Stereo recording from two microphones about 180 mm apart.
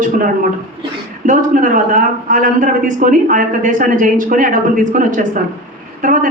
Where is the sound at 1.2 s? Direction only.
45° right (ahead or behind).